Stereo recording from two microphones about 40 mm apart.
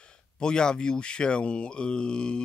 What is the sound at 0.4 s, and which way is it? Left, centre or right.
Speech, left.